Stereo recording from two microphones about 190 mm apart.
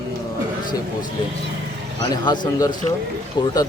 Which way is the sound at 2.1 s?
25° left (ahead or behind).